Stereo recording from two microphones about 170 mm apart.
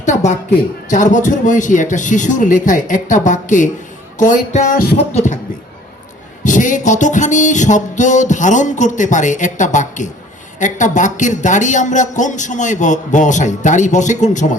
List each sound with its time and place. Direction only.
0.9 s speech: 50° left (ahead or behind)
6.4 s speech: 50° left (ahead or behind)